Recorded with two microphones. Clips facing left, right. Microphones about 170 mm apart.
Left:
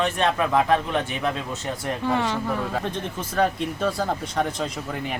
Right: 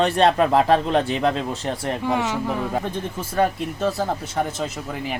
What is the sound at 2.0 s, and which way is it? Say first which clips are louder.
Speech: even; 10° right (ahead or behind).